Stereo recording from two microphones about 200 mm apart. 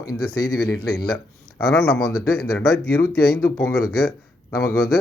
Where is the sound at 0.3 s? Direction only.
90° left.